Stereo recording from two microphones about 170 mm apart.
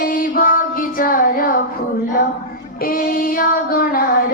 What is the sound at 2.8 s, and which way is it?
Child singing, 60° left (ahead or behind).